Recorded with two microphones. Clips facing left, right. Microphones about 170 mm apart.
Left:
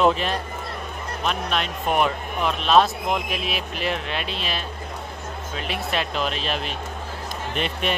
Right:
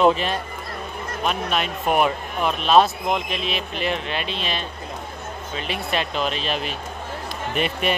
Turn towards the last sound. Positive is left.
turn(degrees=-5)  # may be behind; listen again after turning